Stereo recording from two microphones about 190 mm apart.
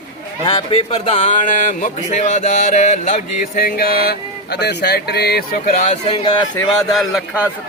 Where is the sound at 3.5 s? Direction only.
50° left (ahead or behind); by 6.4 s 30° left (ahead or behind).